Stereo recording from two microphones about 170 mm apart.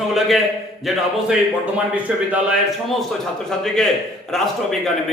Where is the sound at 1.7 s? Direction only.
5° right (ahead or behind).